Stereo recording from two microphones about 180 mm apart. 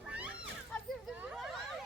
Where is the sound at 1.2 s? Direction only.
5° right (ahead or behind).